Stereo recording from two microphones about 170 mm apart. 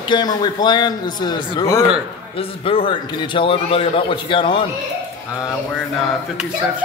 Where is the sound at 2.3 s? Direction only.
35° left (ahead or behind).